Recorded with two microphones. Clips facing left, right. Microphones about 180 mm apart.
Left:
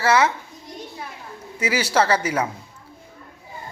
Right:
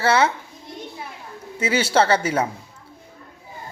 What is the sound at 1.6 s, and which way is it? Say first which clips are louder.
Speech: right 2 dB; 30° right (ahead or behind).